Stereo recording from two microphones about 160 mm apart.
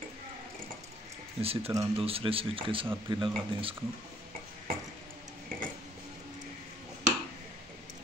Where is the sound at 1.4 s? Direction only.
40° right (ahead or behind).